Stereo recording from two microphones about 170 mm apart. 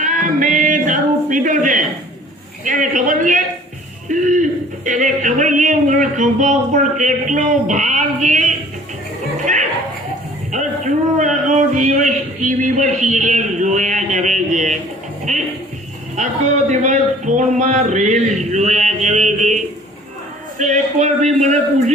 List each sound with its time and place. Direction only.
0.0 s male singing: 50° right (ahead or behind)
2.6 s a sound: 50° right (ahead or behind)
11.2 s a man's voice: 45° right (ahead or behind)
15.3 s music: 45° right (ahead or behind)
16.1 s speech: 45° right (ahead or behind)
20.6 s a sound: 45° right (ahead or behind)